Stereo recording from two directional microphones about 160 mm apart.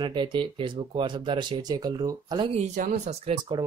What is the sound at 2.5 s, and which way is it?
Speech, 50° right (ahead or behind).